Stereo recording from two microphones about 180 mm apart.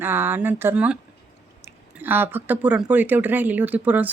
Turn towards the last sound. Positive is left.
turn(degrees=-10)  # may be behind; listen again after turning